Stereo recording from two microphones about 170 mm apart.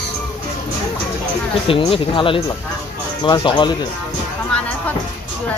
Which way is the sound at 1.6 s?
30° left (ahead or behind).